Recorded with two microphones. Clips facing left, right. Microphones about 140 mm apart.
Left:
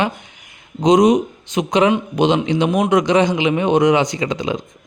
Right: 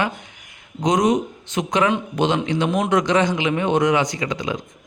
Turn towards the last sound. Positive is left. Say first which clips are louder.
# left 4 dB
turn(degrees=25)  # may be behind; listen again after turning